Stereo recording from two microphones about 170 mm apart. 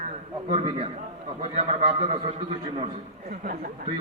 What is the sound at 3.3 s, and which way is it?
Speech, 55° right (ahead or behind).